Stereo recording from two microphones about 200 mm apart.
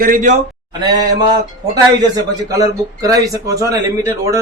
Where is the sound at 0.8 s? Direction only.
20° right (ahead or behind).